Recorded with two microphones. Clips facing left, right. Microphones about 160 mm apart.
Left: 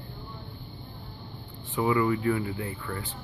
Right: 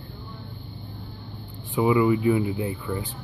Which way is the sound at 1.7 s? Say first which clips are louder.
Right 5 dB; 15° right (ahead or behind).